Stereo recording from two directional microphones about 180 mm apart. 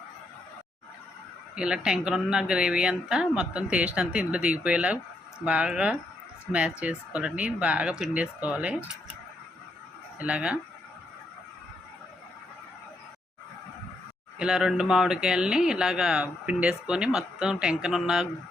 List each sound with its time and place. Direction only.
1.5 s speech: 5° right (ahead or behind)
10.2 s speech: 5° right (ahead or behind)
14.3 s speech: 5° right (ahead or behind)